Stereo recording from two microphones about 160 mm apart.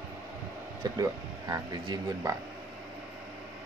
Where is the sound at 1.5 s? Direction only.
25° right (ahead or behind).